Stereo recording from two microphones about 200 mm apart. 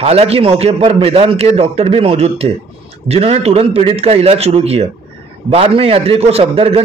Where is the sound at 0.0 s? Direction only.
30° right (ahead or behind).